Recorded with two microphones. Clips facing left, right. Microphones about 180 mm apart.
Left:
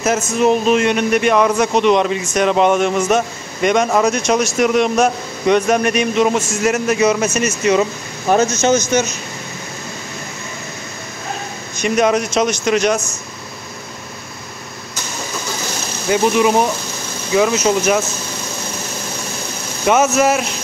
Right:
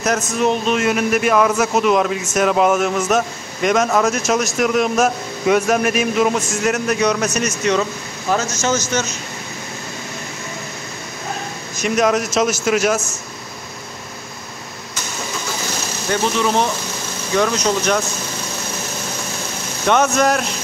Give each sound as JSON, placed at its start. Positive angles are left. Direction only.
{"t": 0.0, "sound": "a man's voice", "side_deg": 0}
{"t": 8.6, "sound": "speech", "side_deg": 15}
{"t": 11.7, "sound": "a man's voice", "side_deg": 0}
{"t": 16.1, "sound": "a man's voice", "side_deg": 10}
{"t": 19.9, "sound": "a man's voice", "side_deg": 5}